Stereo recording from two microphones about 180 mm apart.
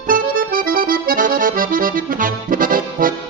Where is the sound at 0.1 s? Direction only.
50° right (ahead or behind).